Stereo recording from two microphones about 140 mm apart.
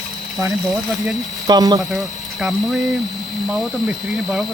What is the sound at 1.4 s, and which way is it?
Speech, 30° right (ahead or behind).